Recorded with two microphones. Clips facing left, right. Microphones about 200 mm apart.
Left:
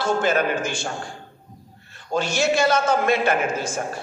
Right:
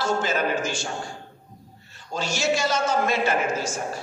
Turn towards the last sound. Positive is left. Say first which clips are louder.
# left 2 dB
turn(degrees=55)  # may be behind; listen again after turning